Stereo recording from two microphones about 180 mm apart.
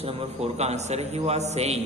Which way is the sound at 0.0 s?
30° right (ahead or behind).